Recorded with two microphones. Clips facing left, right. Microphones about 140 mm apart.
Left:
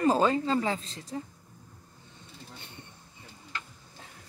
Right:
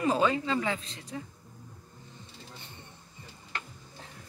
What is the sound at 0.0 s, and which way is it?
Speech, 35° left (ahead or behind).